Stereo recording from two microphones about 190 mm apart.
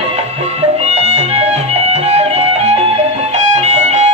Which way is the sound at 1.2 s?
35° right (ahead or behind).